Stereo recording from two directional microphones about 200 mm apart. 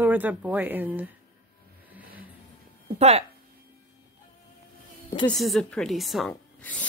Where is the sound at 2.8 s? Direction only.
30° right (ahead or behind).